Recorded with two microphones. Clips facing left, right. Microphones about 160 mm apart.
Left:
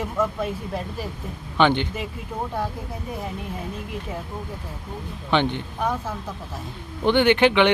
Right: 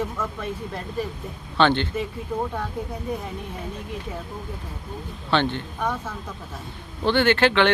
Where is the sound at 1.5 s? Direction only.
15° left (ahead or behind).